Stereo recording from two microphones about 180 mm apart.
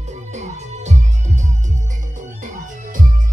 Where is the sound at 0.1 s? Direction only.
40° right (ahead or behind).